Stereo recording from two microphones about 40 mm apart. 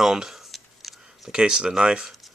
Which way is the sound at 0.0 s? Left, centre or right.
Centre.